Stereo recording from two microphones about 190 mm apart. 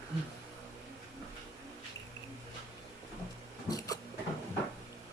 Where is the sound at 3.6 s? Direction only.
20° left (ahead or behind).